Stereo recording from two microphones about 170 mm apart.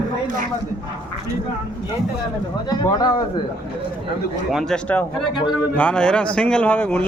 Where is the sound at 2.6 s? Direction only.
25° left (ahead or behind).